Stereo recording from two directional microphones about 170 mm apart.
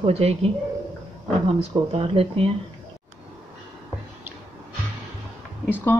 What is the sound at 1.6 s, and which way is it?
Speech, 35° right (ahead or behind).